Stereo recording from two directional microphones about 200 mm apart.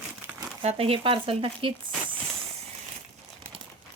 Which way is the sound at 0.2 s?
10° right (ahead or behind).